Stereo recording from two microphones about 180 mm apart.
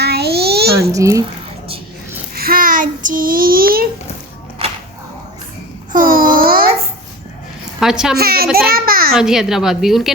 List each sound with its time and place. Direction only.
0.0 s a sound: 65° right (ahead or behind)
0.8 s a child's voice: 15° right (ahead or behind)
2.3 s child singing: 55° right (ahead or behind)
5.9 s babbling: 50° right (ahead or behind)
7.8 s a woman's voice: 5° right (ahead or behind)
8.1 s a child's voice: 55° right (ahead or behind)
9.1 s a woman's voice: 5° right (ahead or behind)